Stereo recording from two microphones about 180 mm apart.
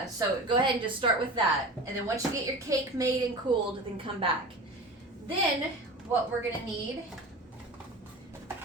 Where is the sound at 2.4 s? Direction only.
20° right (ahead or behind).